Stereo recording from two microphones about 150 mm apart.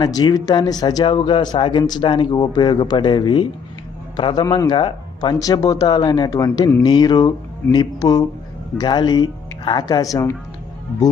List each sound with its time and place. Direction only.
0.0 s speech: 25° left (ahead or behind)